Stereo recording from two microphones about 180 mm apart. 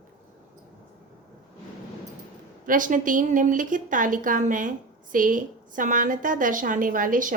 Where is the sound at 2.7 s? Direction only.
45° right (ahead or behind).